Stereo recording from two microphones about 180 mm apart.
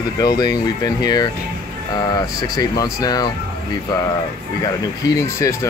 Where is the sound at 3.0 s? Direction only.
20° left (ahead or behind).